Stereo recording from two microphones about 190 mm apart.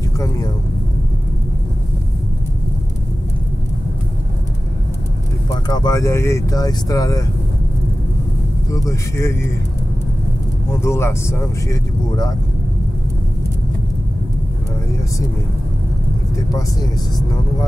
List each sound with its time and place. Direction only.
5.5 s speech: 20° left (ahead or behind)
8.6 s speech: 15° left (ahead or behind)
10.7 s speech: 15° left (ahead or behind)